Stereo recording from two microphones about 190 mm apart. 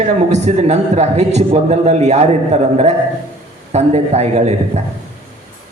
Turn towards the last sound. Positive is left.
turn(degrees=-35)  # may be behind; listen again after turning